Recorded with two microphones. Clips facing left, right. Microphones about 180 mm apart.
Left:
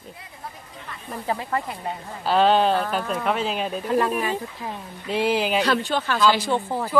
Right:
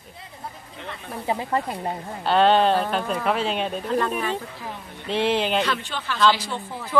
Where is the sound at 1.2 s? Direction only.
20° right (ahead or behind).